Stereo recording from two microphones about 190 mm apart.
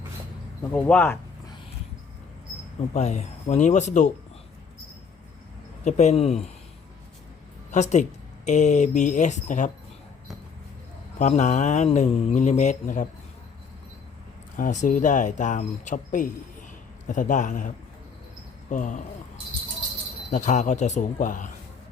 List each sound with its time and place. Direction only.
0.7 s speech: 5° left (ahead or behind)
2.9 s speech: 35° left (ahead or behind)
5.8 s speech: 35° left (ahead or behind)
7.7 s speech: 40° left (ahead or behind)
11.2 s speech: 40° left (ahead or behind)
14.5 s speech: 40° left (ahead or behind)
18.7 s speech: 40° left (ahead or behind)
20.3 s speech: 40° left (ahead or behind)